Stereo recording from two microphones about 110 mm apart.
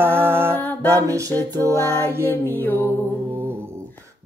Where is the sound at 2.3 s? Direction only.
15° left (ahead or behind).